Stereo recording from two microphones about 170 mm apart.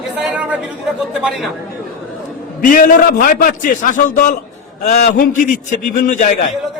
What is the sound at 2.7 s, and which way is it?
A man's voice, 55° left (ahead or behind).